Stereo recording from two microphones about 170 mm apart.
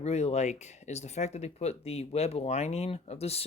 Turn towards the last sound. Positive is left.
turn(degrees=35)  # may be behind; listen again after turning